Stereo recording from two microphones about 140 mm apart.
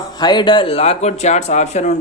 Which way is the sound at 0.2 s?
30° left (ahead or behind).